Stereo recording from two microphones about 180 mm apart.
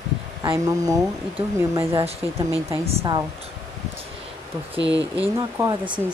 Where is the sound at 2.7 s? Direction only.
35° right (ahead or behind).